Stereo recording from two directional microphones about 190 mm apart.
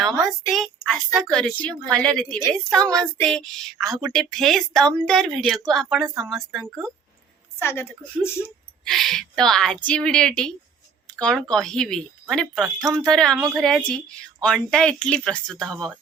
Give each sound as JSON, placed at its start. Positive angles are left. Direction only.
{"t": 0.3, "sound": "speech", "side_deg": 0}
{"t": 7.6, "sound": "a woman's voice", "side_deg": 10}
{"t": 8.8, "sound": "speech", "side_deg": 0}
{"t": 12.6, "sound": "speech", "side_deg": -20}
{"t": 13.1, "sound": "speech", "side_deg": 5}